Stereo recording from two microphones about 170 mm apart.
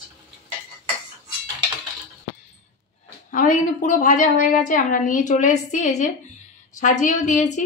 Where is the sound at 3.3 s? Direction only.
50° left (ahead or behind).